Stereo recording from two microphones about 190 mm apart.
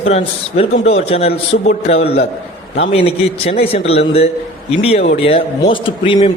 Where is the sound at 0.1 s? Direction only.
30° left (ahead or behind).